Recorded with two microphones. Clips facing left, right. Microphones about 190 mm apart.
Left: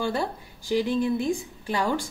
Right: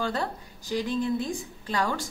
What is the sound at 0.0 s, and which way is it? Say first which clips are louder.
Speech: left 2 dB; 10° left (ahead or behind).